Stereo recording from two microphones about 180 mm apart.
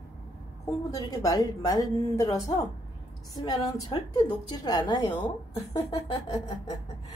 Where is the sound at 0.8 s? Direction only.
20° left (ahead or behind).